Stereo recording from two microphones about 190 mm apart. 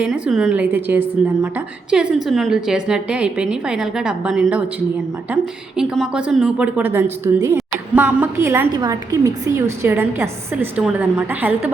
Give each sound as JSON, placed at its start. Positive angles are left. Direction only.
{"t": 0.0, "sound": "a woman's voice", "side_deg": -5}